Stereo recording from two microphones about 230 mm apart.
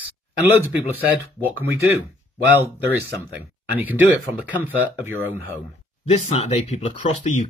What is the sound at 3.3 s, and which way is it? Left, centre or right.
Speech, centre.